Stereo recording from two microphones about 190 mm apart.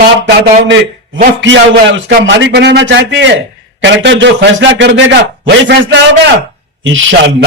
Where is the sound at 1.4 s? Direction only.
75° right (ahead or behind).